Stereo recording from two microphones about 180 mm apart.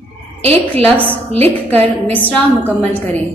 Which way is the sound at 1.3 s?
10° left (ahead or behind).